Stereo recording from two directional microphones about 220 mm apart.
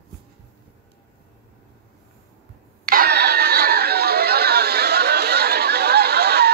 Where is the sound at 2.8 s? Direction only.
45° right (ahead or behind).